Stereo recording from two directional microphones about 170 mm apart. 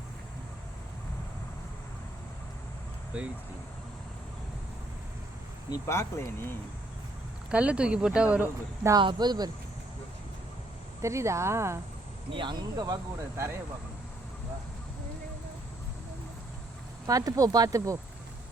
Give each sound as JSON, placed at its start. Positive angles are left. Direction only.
{"t": 5.7, "sound": "speech", "side_deg": 15}
{"t": 7.5, "sound": "speech", "side_deg": -5}
{"t": 9.0, "sound": "speech", "side_deg": -25}
{"t": 11.0, "sound": "speech", "side_deg": -15}
{"t": 12.3, "sound": "speech", "side_deg": -30}
{"t": 17.1, "sound": "speech", "side_deg": -20}